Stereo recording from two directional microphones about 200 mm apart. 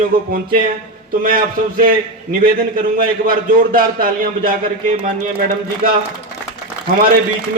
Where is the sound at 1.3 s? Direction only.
45° right (ahead or behind).